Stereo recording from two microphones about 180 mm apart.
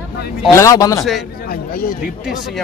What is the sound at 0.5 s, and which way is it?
Speech, 15° left (ahead or behind).